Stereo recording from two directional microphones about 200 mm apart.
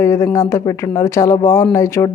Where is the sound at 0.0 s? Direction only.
15° left (ahead or behind).